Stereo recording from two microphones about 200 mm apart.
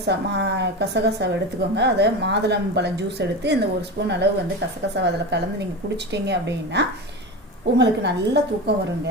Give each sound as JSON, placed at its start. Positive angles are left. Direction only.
{"t": 0.0, "sound": "a woman's voice", "side_deg": -60}